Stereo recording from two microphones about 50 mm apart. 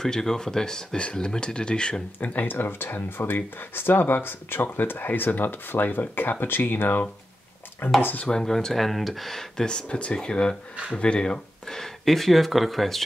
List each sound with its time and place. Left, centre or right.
0.0 s speech: centre
2.1 s speech: left
2.4 s speech: left
8.3 s speech: centre
12.0 s speech: centre